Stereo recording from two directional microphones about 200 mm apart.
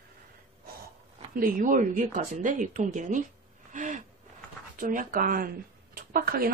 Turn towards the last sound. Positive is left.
turn(degrees=-45)  # may be behind; listen again after turning